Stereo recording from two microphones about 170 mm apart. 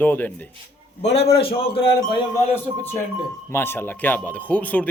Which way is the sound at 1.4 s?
35° left (ahead or behind).